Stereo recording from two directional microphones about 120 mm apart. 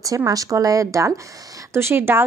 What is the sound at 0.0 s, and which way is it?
Speech, 30° right (ahead or behind).